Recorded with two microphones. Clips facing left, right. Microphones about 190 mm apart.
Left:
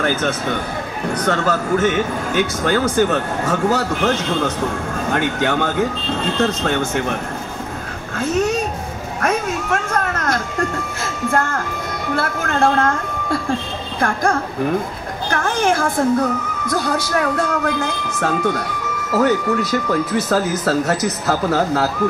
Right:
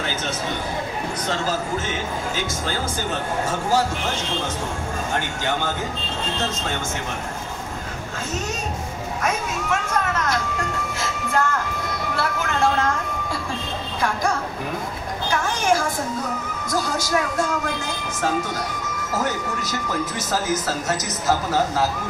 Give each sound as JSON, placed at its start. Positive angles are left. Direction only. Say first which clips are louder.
{"t": 0.0, "sound": "a man's voice", "louder": "left 7 dB", "side_deg": 55}
{"t": 9.2, "sound": "music", "louder": "left 6 dB", "side_deg": 55}
{"t": 12.2, "sound": "a sound", "louder": "left 4 dB", "side_deg": 55}
{"t": 15.2, "sound": "a woman's voice", "louder": "left 3 dB", "side_deg": 55}